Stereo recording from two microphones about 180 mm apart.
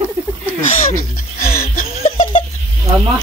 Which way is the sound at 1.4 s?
55° left (ahead or behind).